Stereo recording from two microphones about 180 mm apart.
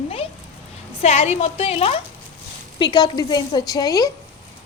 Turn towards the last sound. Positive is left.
turn(degrees=20)  # may be behind; listen again after turning